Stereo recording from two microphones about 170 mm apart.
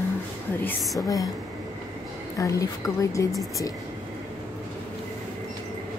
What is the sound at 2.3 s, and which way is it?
Speech, 20° left (ahead or behind).